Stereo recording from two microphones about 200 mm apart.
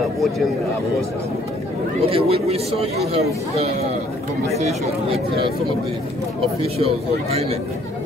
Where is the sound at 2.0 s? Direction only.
30° right (ahead or behind).